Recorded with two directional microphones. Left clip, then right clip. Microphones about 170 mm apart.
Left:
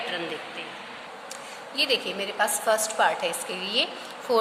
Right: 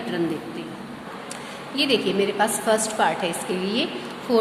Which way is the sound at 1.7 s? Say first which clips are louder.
Right 4 dB; 25° left (ahead or behind).